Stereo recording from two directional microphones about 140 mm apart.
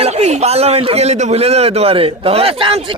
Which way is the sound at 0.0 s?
50° right (ahead or behind).